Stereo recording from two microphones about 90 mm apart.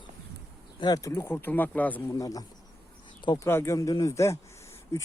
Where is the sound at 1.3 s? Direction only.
20° left (ahead or behind).